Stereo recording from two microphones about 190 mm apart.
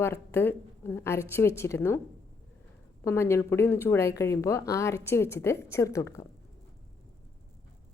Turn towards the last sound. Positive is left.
turn(degrees=15)  # may be behind; listen again after turning